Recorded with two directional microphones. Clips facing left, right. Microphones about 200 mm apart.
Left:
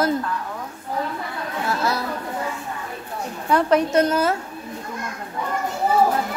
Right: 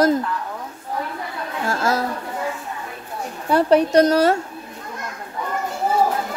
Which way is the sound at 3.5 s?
35° right (ahead or behind).